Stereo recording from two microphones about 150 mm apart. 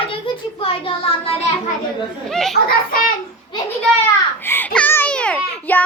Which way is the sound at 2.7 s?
75° left (ahead or behind).